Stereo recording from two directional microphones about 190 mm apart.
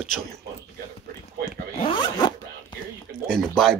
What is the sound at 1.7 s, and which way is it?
Zipper, 25° left (ahead or behind).